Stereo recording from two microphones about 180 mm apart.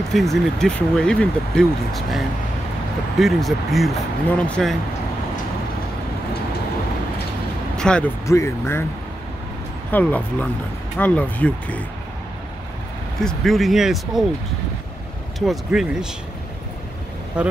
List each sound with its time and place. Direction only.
0.1 s speech: centre (ahead or behind)
7.7 s speech: 5° left (ahead or behind)
8.3 s speech: 15° left (ahead or behind)
9.8 s speech: 10° left (ahead or behind)
13.2 s speech: centre (ahead or behind)
15.3 s speech: centre (ahead or behind)
17.4 s speech: 5° right (ahead or behind)